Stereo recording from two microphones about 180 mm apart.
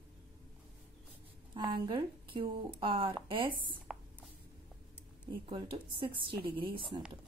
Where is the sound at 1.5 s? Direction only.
25° right (ahead or behind).